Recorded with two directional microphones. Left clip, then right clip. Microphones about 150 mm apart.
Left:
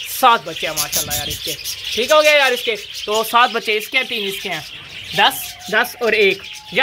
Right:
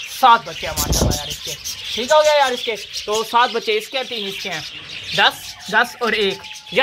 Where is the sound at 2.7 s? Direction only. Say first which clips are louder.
Left 3 dB; 15° left (ahead or behind).